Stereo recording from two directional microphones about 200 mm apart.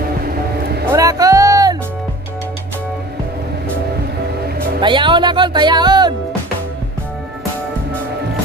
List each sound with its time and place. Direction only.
0.2 s vehicle: 55° right (ahead or behind)
0.9 s music: 15° right (ahead or behind)
4.7 s speech: 25° right (ahead or behind)